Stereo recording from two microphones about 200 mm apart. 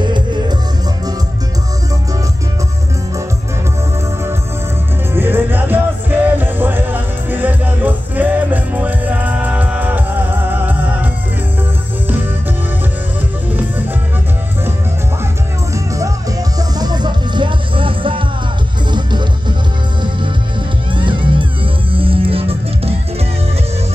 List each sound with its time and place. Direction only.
5.1 s music: 10° right (ahead or behind)
16.5 s music: 20° right (ahead or behind)
20.9 s music: 25° right (ahead or behind)